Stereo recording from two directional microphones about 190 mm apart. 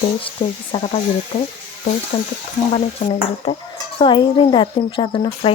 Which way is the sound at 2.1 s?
20° left (ahead or behind).